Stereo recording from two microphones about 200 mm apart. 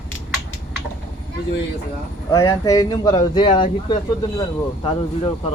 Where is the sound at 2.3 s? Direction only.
15° left (ahead or behind).